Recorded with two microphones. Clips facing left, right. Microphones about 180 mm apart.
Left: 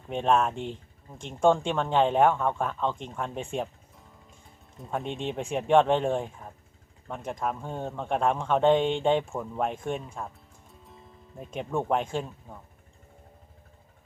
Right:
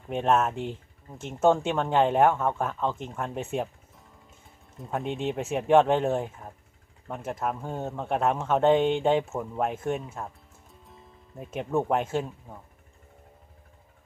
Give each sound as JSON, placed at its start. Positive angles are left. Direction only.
{"t": 0.1, "sound": "speech", "side_deg": -5}
{"t": 10.7, "sound": "music", "side_deg": 0}